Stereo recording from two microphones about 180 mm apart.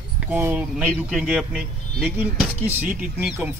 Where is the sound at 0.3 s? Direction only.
10° right (ahead or behind).